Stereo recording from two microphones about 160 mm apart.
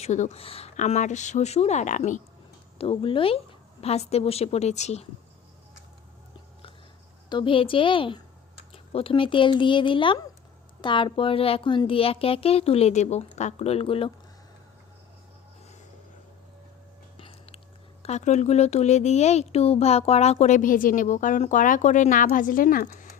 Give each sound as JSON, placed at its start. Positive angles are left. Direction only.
{"t": 0.0, "sound": "speech", "side_deg": 45}
{"t": 2.7, "sound": "speech", "side_deg": 35}
{"t": 7.3, "sound": "speech", "side_deg": 30}
{"t": 17.2, "sound": "biting", "side_deg": 35}
{"t": 18.0, "sound": "speech", "side_deg": 45}